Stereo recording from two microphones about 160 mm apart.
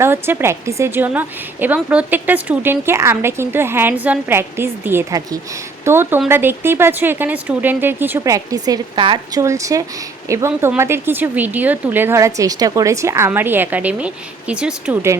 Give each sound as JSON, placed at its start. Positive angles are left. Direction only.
{"t": 0.0, "sound": "a woman's voice", "side_deg": -15}